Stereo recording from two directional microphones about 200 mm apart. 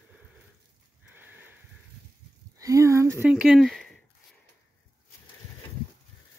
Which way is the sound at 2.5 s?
15° right (ahead or behind).